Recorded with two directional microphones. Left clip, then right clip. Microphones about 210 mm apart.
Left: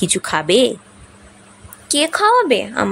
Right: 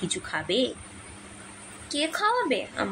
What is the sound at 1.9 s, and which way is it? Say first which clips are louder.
Speech: left 12 dB; 50° left (ahead or behind).